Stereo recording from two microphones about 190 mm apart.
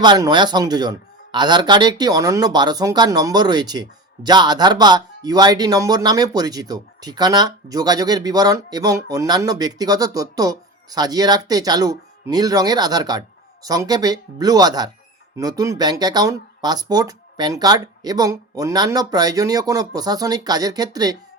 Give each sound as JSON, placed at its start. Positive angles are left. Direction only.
{"t": 0.0, "sound": "speech", "side_deg": -25}